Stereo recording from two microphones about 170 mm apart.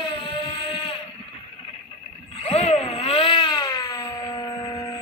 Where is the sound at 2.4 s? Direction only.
40° left (ahead or behind).